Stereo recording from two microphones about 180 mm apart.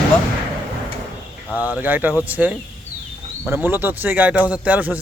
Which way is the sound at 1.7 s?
10° right (ahead or behind).